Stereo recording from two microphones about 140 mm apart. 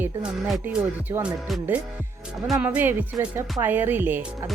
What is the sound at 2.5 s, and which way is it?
Speech, 10° right (ahead or behind).